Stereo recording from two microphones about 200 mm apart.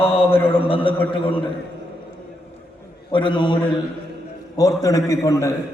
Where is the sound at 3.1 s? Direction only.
25° left (ahead or behind).